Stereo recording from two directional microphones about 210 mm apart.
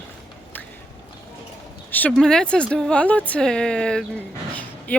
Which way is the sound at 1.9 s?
10° left (ahead or behind).